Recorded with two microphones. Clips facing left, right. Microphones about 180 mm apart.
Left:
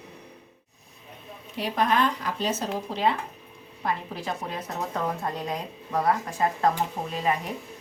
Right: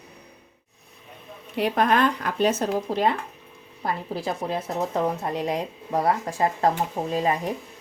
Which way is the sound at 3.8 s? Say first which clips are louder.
Right 2 dB; 30° right (ahead or behind).